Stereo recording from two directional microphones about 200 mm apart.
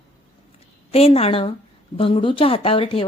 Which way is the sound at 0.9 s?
30° left (ahead or behind).